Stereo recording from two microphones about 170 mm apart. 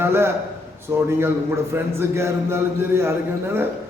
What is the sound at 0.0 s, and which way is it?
Speech, 15° right (ahead or behind).